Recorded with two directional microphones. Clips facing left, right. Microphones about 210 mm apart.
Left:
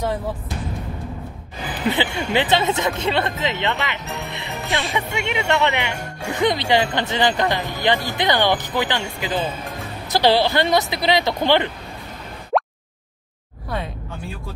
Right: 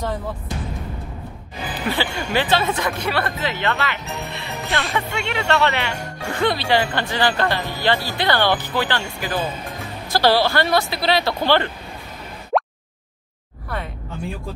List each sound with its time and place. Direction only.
1.9 s speech: 20° left (ahead or behind)
4.6 s music: centre (ahead or behind)
4.9 s speech: 15° left (ahead or behind)
12.5 s a sound: centre (ahead or behind)